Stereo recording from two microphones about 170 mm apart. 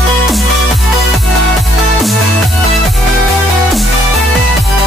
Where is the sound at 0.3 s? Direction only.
Centre (ahead or behind).